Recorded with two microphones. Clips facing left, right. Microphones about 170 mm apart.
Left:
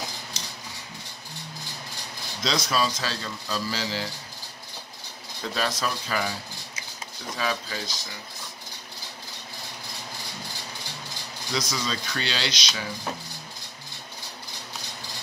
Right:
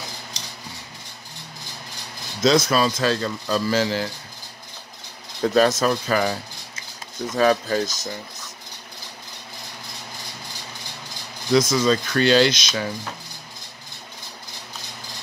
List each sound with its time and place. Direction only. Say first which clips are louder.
2.4 s speech: right 8 dB; 50° right (ahead or behind)
5.4 s speech: right 11 dB; 45° right (ahead or behind)
7.3 s speech: right 12 dB; 50° right (ahead or behind)
11.5 s speech: right 12 dB; 50° right (ahead or behind)